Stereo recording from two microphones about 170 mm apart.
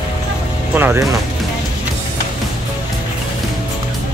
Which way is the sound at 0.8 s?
10° right (ahead or behind).